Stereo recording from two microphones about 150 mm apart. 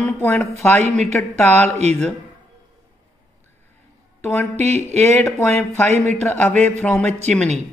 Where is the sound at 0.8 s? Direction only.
45° right (ahead or behind).